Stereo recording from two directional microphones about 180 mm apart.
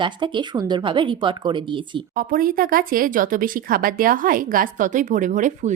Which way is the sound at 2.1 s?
50° right (ahead or behind).